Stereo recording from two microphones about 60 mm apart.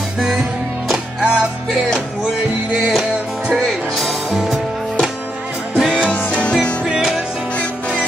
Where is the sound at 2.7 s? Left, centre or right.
Centre.